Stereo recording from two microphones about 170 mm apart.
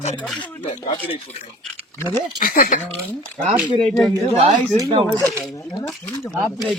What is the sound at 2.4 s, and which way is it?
Speech, 55° left (ahead or behind).